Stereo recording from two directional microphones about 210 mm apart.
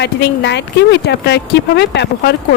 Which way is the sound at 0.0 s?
55° left (ahead or behind).